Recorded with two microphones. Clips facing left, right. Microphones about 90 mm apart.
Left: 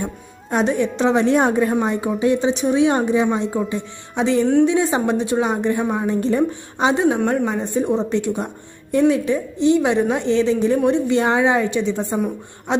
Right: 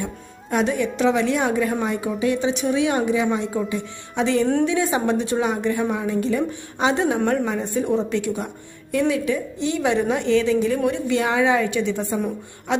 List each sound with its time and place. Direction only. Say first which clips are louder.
0.5 s a woman's voice: left 2 dB; 25° left (ahead or behind)
6.7 s a woman's voice: left 3 dB; 20° left (ahead or behind)